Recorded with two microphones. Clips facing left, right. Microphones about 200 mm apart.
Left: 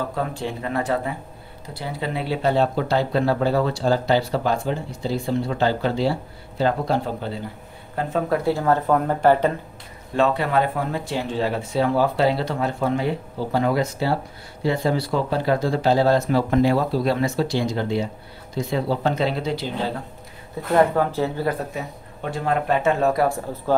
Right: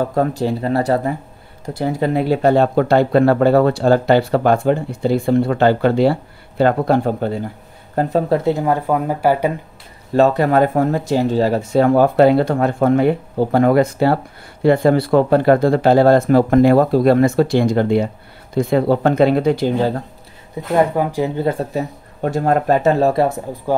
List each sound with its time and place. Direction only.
0.1 s speech: 45° right (ahead or behind)
8.3 s speech: 20° right (ahead or behind)
10.1 s speech: 40° right (ahead or behind)
20.7 s speech: 15° right (ahead or behind)
21.7 s speech: 45° right (ahead or behind)
23.2 s speech: 20° right (ahead or behind)